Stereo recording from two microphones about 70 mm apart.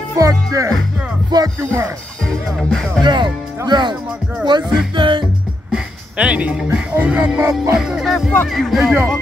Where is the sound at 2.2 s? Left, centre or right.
Centre.